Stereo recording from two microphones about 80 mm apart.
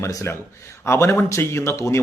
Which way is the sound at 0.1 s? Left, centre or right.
Left.